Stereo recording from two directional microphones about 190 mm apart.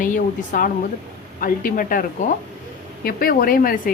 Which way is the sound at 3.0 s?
50° left (ahead or behind).